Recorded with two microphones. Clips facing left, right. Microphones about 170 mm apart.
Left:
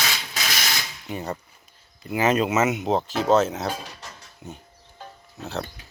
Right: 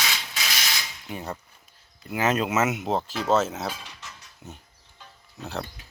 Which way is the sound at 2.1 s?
Centre (ahead or behind).